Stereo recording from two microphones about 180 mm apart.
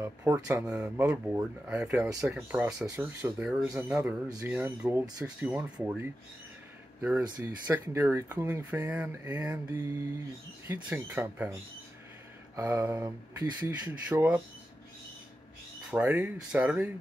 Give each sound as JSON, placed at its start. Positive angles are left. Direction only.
{"t": 0.0, "sound": "speech", "side_deg": -15}
{"t": 12.5, "sound": "speech", "side_deg": -15}
{"t": 13.8, "sound": "speech", "side_deg": -10}
{"t": 15.9, "sound": "speech", "side_deg": -10}